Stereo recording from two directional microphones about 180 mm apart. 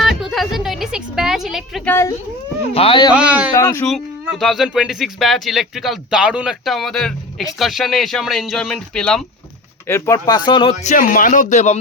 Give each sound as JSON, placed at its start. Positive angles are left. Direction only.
{"t": 0.0, "sound": "a sound", "side_deg": 0}
{"t": 1.9, "sound": "speech", "side_deg": 15}
{"t": 2.7, "sound": "speech", "side_deg": 30}
{"t": 3.1, "sound": "speech", "side_deg": -5}
{"t": 3.5, "sound": "speech", "side_deg": 15}
{"t": 3.8, "sound": "speech", "side_deg": 0}
{"t": 9.8, "sound": "a man's voice", "side_deg": 15}